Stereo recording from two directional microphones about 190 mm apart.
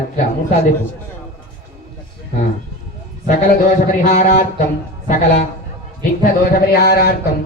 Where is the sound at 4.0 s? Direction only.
40° left (ahead or behind).